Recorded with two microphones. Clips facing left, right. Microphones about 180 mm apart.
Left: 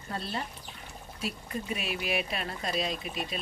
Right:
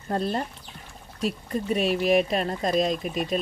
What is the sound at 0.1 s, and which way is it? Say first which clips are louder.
Speech: right 9 dB; 50° right (ahead or behind).